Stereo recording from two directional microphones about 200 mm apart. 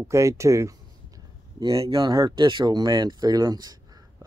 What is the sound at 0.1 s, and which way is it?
Speech, 15° right (ahead or behind).